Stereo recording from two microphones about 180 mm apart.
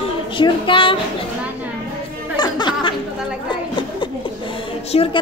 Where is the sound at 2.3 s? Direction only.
25° left (ahead or behind).